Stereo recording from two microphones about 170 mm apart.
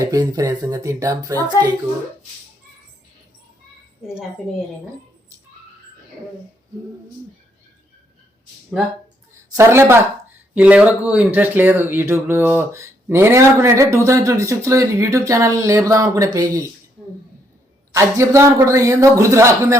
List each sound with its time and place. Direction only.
0.0 s speech: 20° right (ahead or behind)
9.5 s speech: 15° right (ahead or behind)
17.9 s speech: 15° right (ahead or behind)